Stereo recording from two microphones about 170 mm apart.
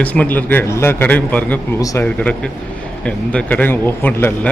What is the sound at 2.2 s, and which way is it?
A man's voice, 5° left (ahead or behind).